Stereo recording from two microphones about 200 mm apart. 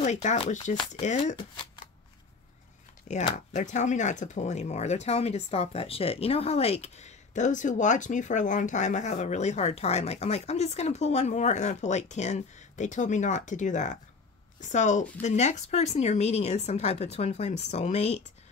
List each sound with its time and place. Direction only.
0.0 s speech: 35° left (ahead or behind)
3.1 s speech: 35° left (ahead or behind)